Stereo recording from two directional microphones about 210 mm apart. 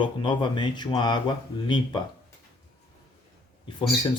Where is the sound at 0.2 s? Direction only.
25° left (ahead or behind).